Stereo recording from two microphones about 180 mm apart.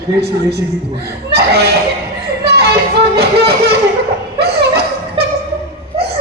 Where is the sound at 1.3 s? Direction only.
65° right (ahead or behind).